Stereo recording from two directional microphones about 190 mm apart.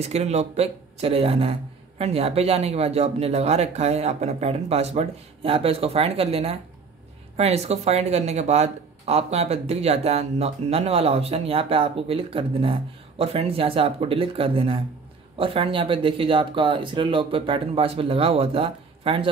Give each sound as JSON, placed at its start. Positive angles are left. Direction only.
{"t": 0.0, "sound": "speech", "side_deg": -35}